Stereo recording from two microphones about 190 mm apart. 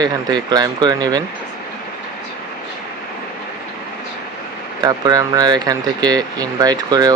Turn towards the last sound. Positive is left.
turn(degrees=-20)  # may be behind; listen again after turning